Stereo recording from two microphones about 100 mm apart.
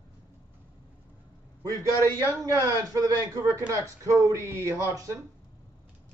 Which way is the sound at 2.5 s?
30° right (ahead or behind).